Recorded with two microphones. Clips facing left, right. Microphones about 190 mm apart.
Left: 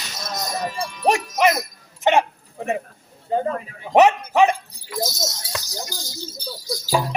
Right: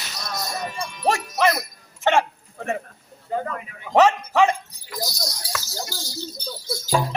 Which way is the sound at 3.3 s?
30° left (ahead or behind).